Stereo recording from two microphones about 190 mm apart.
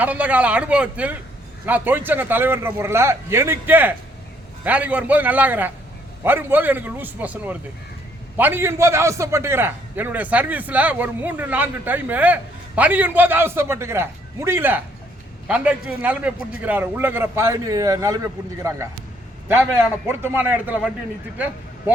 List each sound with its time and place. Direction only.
0.0 s a man's voice: 10° right (ahead or behind)